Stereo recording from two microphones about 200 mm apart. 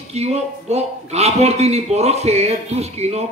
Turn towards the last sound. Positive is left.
turn(degrees=-30)  # may be behind; listen again after turning